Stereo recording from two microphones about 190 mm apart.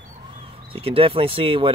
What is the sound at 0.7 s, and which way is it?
Speech, 30° right (ahead or behind).